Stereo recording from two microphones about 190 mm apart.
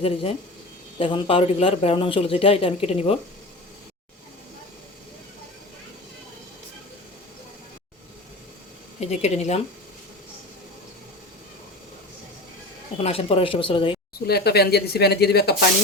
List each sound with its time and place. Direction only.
0.0 s a man's voice: 30° left (ahead or behind)
9.0 s speech: 35° left (ahead or behind)
13.0 s a man's voice: 30° left (ahead or behind)
14.3 s speech: 60° left (ahead or behind)